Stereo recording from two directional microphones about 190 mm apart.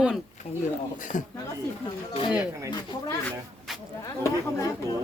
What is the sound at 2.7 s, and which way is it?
Speech, 20° left (ahead or behind).